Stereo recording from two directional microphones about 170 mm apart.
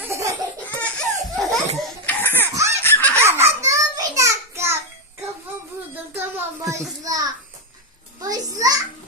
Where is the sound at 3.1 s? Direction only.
15° right (ahead or behind).